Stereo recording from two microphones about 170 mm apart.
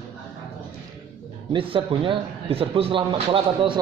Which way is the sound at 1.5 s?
30° right (ahead or behind).